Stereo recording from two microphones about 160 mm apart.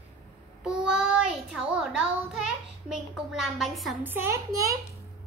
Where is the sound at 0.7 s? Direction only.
5° right (ahead or behind).